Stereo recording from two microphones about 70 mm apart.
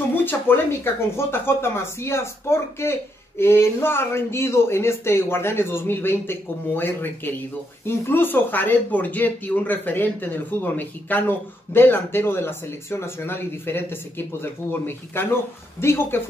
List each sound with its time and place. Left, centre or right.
0.1 s speech: left